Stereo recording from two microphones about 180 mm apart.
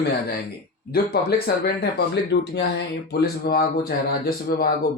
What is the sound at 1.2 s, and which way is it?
Speech, 60° left (ahead or behind).